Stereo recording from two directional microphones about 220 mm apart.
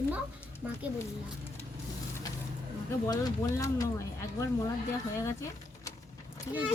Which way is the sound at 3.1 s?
15° left (ahead or behind).